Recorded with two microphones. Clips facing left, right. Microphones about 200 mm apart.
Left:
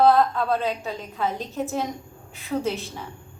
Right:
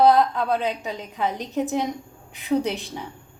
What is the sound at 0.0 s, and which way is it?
A woman's voice, 15° right (ahead or behind).